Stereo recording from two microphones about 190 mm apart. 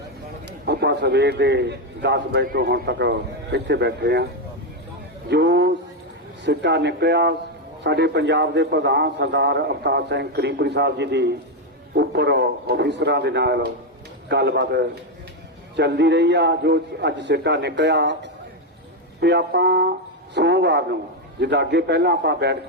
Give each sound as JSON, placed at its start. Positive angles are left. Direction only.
{"t": 0.4, "sound": "a man's voice", "side_deg": -60}
{"t": 5.3, "sound": "a man's voice", "side_deg": -65}